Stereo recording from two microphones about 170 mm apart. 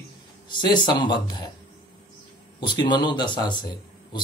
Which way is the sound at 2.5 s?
25° left (ahead or behind).